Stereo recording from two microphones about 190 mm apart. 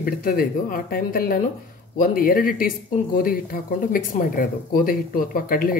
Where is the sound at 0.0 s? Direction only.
50° left (ahead or behind).